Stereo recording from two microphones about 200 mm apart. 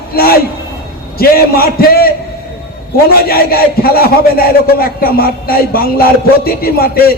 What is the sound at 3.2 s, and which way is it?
Speech, 50° left (ahead or behind).